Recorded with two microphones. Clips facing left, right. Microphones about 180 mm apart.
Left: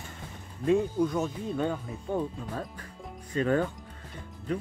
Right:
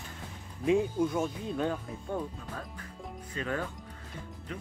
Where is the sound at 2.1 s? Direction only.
25° left (ahead or behind).